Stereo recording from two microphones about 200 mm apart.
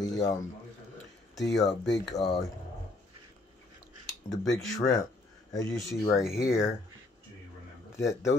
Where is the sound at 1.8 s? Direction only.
60° left (ahead or behind).